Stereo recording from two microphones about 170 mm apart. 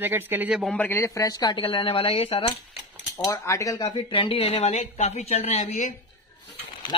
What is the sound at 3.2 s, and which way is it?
Speech, 20° left (ahead or behind).